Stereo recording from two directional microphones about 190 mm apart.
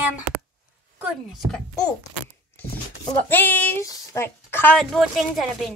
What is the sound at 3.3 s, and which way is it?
Speech, 10° left (ahead or behind).